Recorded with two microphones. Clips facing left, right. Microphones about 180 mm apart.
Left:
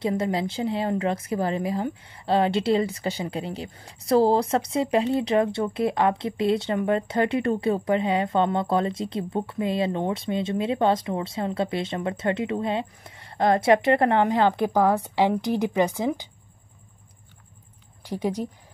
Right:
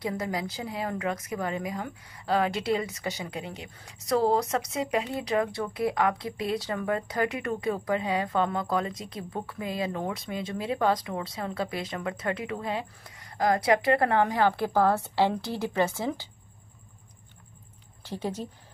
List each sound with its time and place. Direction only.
0.0 s speech: 25° left (ahead or behind)
18.0 s speech: 10° left (ahead or behind)